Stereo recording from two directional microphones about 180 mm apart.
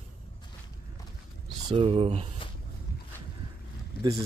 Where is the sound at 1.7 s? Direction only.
30° right (ahead or behind).